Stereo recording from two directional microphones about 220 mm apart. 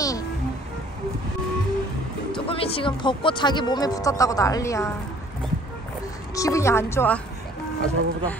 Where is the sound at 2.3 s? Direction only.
25° left (ahead or behind).